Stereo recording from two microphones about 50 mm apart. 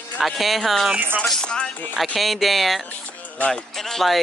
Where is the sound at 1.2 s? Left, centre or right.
Centre.